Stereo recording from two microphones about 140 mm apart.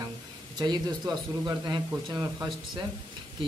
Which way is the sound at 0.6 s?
30° right (ahead or behind).